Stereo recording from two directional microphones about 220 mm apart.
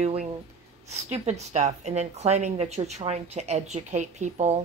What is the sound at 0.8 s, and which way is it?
A woman's voice, 30° right (ahead or behind).